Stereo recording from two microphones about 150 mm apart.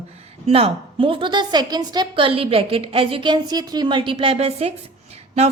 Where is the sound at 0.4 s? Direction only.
40° right (ahead or behind).